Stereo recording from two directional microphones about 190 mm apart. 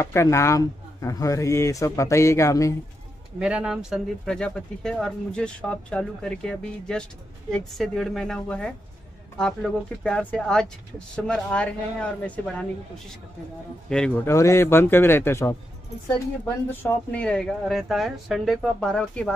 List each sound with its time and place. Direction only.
0.0 s speech: 15° left (ahead or behind)
3.3 s speech: 5° right (ahead or behind)
14.3 s speech: 15° left (ahead or behind)
16.8 s speech: 5° left (ahead or behind)